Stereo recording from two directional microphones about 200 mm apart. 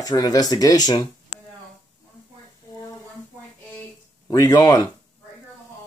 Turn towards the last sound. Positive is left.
turn(degrees=20)  # may be behind; listen again after turning